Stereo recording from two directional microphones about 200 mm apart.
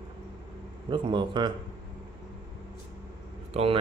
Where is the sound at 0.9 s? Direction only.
25° right (ahead or behind).